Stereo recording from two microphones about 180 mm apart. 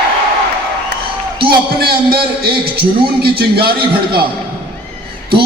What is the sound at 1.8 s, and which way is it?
A man's voice, 60° right (ahead or behind).